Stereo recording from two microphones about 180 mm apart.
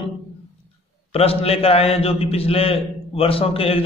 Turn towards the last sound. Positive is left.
turn(degrees=30)  # may be behind; listen again after turning